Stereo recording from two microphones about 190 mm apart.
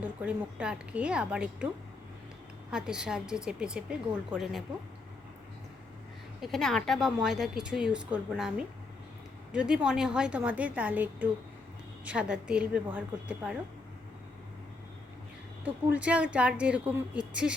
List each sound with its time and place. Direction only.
0.0 s a woman's voice: 5° right (ahead or behind)
2.6 s a woman's voice: 5° right (ahead or behind)
6.4 s a woman's voice: centre (ahead or behind)
15.6 s a woman's voice: 10° right (ahead or behind)